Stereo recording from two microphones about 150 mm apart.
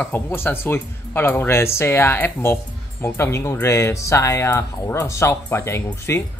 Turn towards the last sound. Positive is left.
turn(degrees=20)  # may be behind; listen again after turning